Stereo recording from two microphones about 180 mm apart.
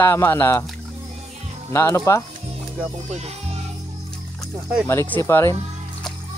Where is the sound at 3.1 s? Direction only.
35° right (ahead or behind).